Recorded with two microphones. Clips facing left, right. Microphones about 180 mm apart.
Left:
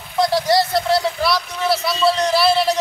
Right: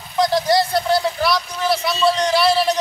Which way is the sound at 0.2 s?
Centre (ahead or behind).